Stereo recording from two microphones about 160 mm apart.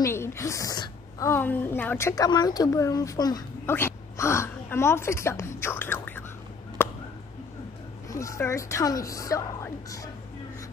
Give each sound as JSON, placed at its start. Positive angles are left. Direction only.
{"t": 0.0, "sound": "a woman's voice", "side_deg": 15}
{"t": 8.1, "sound": "a woman's voice", "side_deg": 20}